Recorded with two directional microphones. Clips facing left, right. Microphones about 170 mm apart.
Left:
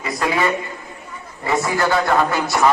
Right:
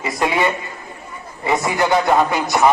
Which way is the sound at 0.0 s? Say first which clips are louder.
Right 1 dB; 25° right (ahead or behind).